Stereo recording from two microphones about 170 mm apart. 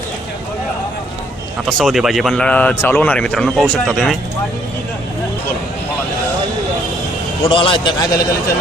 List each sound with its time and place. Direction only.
1.6 s speech: centre (ahead or behind)
7.4 s a man's voice: 30° left (ahead or behind)